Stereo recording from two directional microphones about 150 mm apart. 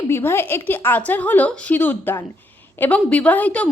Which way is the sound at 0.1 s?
15° left (ahead or behind).